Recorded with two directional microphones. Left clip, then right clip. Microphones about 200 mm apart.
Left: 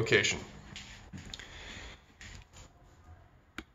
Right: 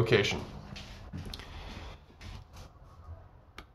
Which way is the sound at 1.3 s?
5° left (ahead or behind).